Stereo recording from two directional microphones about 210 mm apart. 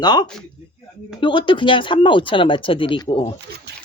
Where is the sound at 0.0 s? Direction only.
20° left (ahead or behind).